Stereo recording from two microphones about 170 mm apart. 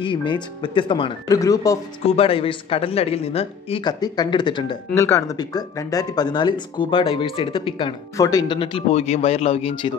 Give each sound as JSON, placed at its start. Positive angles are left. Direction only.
{"t": 0.0, "sound": "speech", "side_deg": 30}
{"t": 2.0, "sound": "speech", "side_deg": 35}
{"t": 8.2, "sound": "speech", "side_deg": 20}
{"t": 8.5, "sound": "speech", "side_deg": 35}